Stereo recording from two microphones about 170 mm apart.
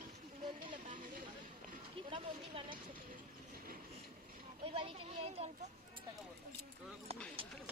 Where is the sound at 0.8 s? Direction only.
50° right (ahead or behind).